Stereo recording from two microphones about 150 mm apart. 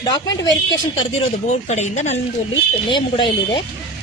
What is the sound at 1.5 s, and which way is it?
Speech, 50° left (ahead or behind).